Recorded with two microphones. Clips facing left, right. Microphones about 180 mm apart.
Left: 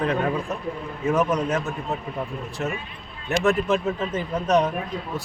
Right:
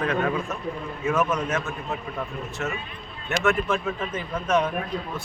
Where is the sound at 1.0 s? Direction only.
35° left (ahead or behind).